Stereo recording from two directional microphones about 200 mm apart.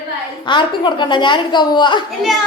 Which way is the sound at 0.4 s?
25° left (ahead or behind).